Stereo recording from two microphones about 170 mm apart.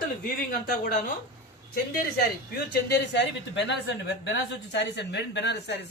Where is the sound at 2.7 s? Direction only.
85° left.